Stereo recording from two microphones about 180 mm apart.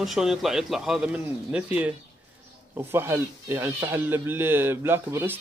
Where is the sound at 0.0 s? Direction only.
Centre (ahead or behind).